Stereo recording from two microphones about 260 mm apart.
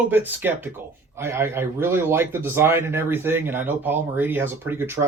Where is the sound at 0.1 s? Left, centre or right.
Centre.